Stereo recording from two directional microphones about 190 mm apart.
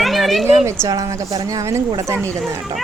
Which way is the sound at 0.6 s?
15° right (ahead or behind).